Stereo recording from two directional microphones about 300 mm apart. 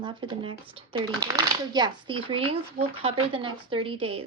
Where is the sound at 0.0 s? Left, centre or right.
Centre.